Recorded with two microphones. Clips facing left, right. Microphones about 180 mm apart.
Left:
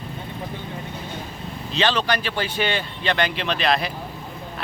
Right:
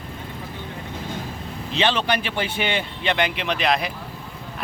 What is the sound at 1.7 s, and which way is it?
Speech, 20° right (ahead or behind).